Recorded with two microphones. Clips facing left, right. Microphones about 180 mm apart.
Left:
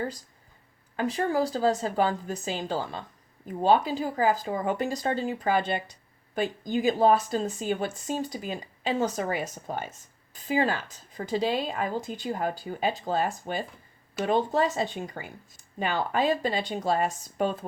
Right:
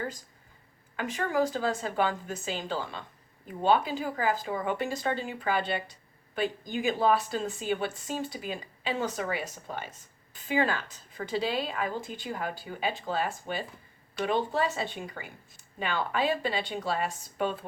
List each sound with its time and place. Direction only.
0.9 s a woman's voice: 35° left (ahead or behind)